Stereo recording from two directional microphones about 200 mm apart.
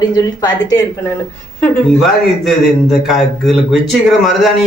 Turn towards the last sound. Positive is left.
turn(degrees=0)  # may be behind; listen again after turning